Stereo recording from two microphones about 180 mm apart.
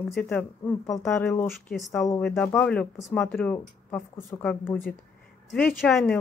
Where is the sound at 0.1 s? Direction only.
5° left (ahead or behind).